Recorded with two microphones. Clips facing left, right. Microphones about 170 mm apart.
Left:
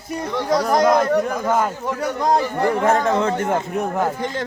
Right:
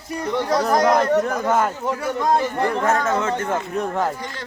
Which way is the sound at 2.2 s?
15° left (ahead or behind).